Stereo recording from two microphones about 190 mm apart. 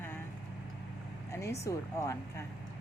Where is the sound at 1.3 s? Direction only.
15° left (ahead or behind).